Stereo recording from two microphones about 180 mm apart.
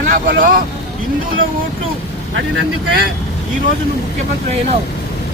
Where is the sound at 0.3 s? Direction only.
55° right (ahead or behind).